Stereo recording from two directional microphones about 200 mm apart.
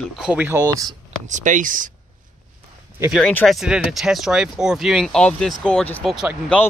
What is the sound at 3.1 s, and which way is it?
Speech, 5° left (ahead or behind).